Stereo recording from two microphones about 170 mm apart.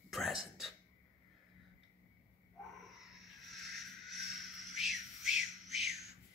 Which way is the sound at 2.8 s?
Centre (ahead or behind).